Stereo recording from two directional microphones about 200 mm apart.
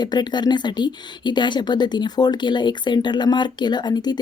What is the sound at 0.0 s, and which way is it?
A woman's voice, 20° left (ahead or behind).